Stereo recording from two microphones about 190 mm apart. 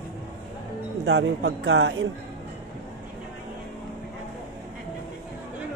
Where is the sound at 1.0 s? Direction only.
70° right (ahead or behind).